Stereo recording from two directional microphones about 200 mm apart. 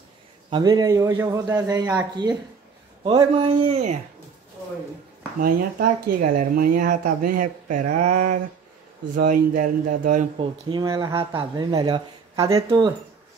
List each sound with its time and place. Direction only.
0.5 s a man's voice: 20° right (ahead or behind)
5.4 s a man's voice: 45° right (ahead or behind)
10.4 s speech: 25° right (ahead or behind)